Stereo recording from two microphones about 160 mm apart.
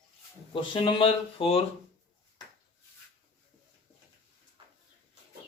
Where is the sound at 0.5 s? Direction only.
30° left (ahead or behind).